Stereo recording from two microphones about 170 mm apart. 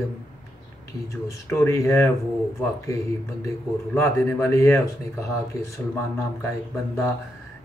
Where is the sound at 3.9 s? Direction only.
15° left (ahead or behind).